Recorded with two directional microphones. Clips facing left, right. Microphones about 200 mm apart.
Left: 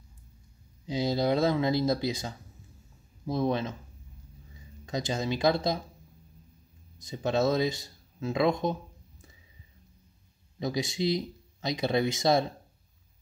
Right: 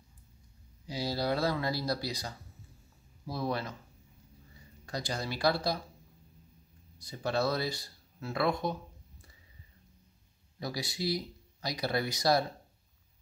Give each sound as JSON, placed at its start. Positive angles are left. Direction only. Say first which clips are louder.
{"t": 0.8, "sound": "speech", "louder": "left 5 dB", "side_deg": 20}
{"t": 4.8, "sound": "speech", "louder": "left 6 dB", "side_deg": 20}
{"t": 7.1, "sound": "speech", "louder": "left 5 dB", "side_deg": 20}
{"t": 10.6, "sound": "speech", "louder": "left 6 dB", "side_deg": 20}